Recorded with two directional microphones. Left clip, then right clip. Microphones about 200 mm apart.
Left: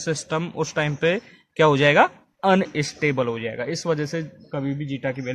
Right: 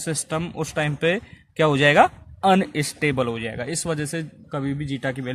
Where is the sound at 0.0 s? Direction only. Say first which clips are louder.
Left 2 dB; 20° right (ahead or behind).